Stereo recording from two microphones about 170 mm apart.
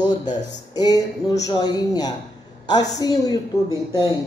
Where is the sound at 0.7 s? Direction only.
20° left (ahead or behind).